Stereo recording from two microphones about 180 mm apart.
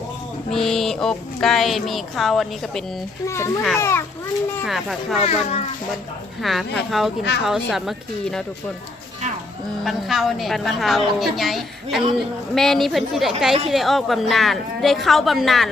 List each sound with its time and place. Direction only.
0.5 s a woman's voice: centre (ahead or behind)
3.2 s a child's voice: 15° left (ahead or behind)
4.6 s a woman's voice: centre (ahead or behind)
5.2 s speech: 35° left (ahead or behind)
6.4 s a woman's voice: centre (ahead or behind)
9.8 s a woman's voice: centre (ahead or behind)